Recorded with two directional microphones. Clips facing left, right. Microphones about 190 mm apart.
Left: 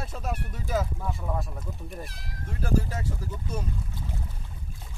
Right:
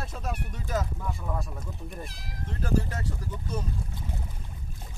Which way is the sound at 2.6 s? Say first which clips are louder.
Left 1 dB; 10° left (ahead or behind).